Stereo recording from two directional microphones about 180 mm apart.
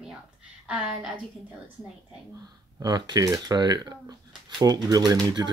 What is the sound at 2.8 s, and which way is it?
Speech, 20° right (ahead or behind).